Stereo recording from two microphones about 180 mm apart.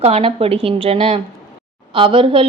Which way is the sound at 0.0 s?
35° right (ahead or behind).